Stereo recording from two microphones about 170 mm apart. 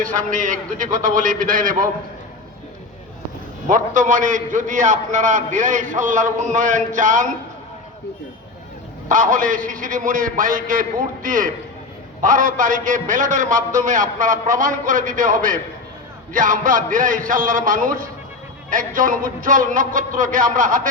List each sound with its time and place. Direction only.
0.0 s a man's voice: 50° right (ahead or behind)
3.7 s a man's voice: 50° right (ahead or behind)
9.0 s a man's voice: 50° right (ahead or behind)